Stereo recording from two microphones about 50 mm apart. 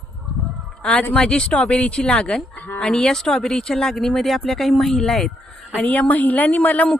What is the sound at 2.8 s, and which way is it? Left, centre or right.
Speech, centre.